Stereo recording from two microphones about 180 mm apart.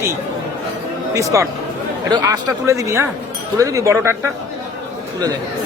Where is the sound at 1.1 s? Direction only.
15° right (ahead or behind).